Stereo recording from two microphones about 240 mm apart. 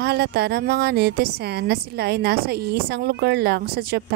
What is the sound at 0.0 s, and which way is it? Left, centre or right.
A woman's voice, right.